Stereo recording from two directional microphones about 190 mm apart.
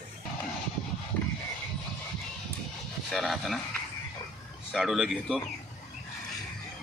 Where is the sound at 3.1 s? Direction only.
Centre (ahead or behind).